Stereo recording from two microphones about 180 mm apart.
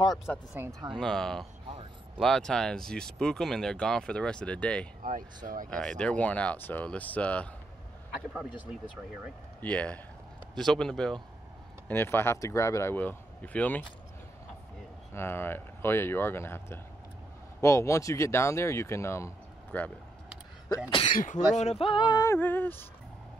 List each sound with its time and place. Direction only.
0.6 s speech: 15° right (ahead or behind)
0.8 s speech: 5° left (ahead or behind)
8.1 s speech: 5° right (ahead or behind)
9.6 s speech: 5° left (ahead or behind)
15.1 s speech: 10° left (ahead or behind)
21.1 s speech: 45° left (ahead or behind); by 22.8 s 10° left (ahead or behind)